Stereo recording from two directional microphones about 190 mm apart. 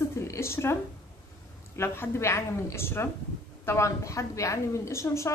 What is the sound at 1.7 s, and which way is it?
Speech, 10° left (ahead or behind).